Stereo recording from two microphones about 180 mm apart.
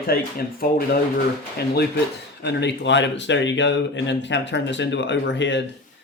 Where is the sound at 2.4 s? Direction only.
75° left (ahead or behind).